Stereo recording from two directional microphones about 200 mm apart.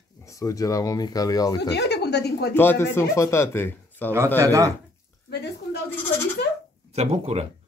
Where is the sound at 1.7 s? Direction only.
55° left (ahead or behind).